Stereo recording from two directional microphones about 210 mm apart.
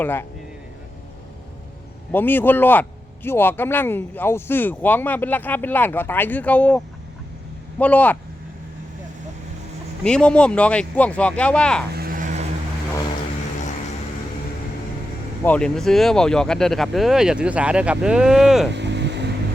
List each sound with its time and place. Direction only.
0.0 s speech: 10° left (ahead or behind)
2.1 s speech: 10° left (ahead or behind)
10.0 s speech: 5° left (ahead or behind)
11.9 s vehicle: 45° right (ahead or behind)
15.4 s speech: 5° left (ahead or behind)
18.7 s vehicle: 55° right (ahead or behind)